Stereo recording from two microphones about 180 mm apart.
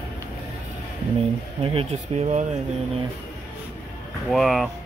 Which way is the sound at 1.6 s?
30° right (ahead or behind).